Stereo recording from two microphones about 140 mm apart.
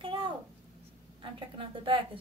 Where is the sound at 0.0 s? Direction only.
35° right (ahead or behind).